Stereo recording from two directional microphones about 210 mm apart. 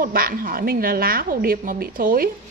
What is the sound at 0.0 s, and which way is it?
Speech, 45° right (ahead or behind).